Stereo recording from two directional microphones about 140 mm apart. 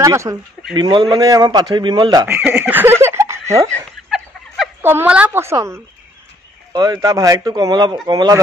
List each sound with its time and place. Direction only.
0.0 s speech: 20° right (ahead or behind)
0.7 s speech: 35° right (ahead or behind)
2.2 s laughter: 10° right (ahead or behind)
3.6 s a sound: 5° left (ahead or behind)
4.8 s a woman's voice: 10° right (ahead or behind); by 8.4 s 25° right (ahead or behind)